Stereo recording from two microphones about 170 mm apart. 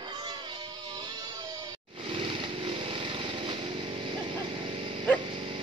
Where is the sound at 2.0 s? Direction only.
30° right (ahead or behind).